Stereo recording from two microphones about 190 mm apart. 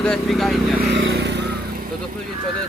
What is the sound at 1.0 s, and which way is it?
Vehicle, 65° right (ahead or behind).